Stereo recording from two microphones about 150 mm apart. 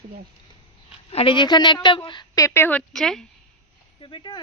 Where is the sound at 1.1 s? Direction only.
35° left (ahead or behind); by 3.2 s 5° left (ahead or behind).